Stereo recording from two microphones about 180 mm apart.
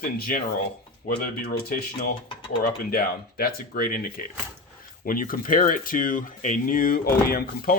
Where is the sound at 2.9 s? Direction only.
55° left (ahead or behind).